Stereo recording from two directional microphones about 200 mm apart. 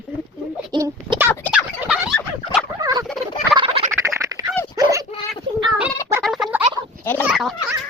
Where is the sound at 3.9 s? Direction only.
15° right (ahead or behind).